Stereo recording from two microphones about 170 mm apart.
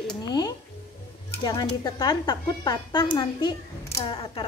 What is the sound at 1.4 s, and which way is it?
Speech, 20° left (ahead or behind).